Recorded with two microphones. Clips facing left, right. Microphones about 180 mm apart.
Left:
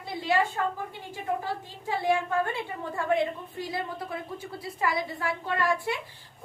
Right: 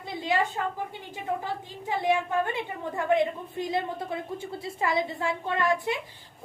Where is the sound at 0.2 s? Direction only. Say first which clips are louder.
Left 1 dB; 20° right (ahead or behind).